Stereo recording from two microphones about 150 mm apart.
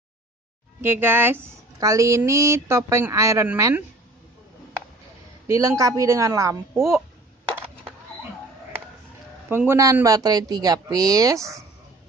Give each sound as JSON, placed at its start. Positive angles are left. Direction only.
{"t": 0.7, "sound": "a woman's voice", "side_deg": -15}
{"t": 5.5, "sound": "a woman's voice", "side_deg": -20}
{"t": 9.5, "sound": "a woman's voice", "side_deg": -15}